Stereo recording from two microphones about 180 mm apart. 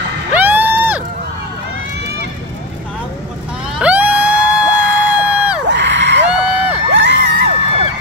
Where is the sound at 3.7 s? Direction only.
5° right (ahead or behind).